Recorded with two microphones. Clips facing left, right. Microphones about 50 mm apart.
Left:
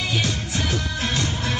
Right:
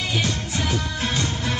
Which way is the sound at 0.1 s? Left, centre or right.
Centre.